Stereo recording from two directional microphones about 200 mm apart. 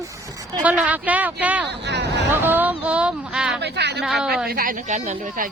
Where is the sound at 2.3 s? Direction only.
10° right (ahead or behind).